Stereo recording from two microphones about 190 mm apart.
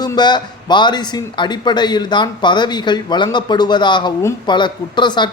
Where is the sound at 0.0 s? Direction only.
25° left (ahead or behind).